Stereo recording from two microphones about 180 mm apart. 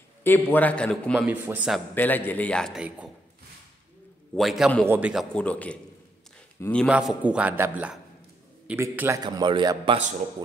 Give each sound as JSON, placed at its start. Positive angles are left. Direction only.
{"t": 0.2, "sound": "a man's voice", "side_deg": 10}
{"t": 1.2, "sound": "a man's voice", "side_deg": -10}
{"t": 2.0, "sound": "a man's voice", "side_deg": 10}
{"t": 4.4, "sound": "a man's voice", "side_deg": 0}
{"t": 5.3, "sound": "a man's voice", "side_deg": 5}
{"t": 6.9, "sound": "a man's voice", "side_deg": -5}